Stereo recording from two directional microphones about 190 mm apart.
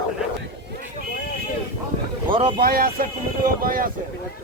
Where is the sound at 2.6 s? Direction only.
50° right (ahead or behind).